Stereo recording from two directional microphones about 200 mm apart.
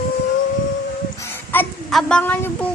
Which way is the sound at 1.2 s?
10° left (ahead or behind).